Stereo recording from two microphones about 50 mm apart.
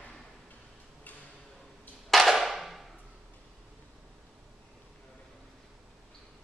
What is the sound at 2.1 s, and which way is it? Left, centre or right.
Wood block, centre.